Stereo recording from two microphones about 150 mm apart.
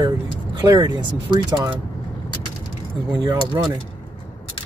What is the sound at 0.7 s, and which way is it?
Speech, 30° right (ahead or behind).